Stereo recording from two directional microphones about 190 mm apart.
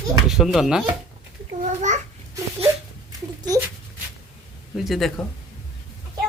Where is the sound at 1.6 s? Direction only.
40° right (ahead or behind).